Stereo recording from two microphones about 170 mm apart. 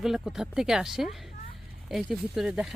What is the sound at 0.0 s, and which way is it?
Speech, centre (ahead or behind).